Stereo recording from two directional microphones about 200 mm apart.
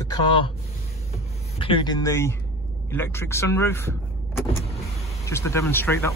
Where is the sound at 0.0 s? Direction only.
20° left (ahead or behind).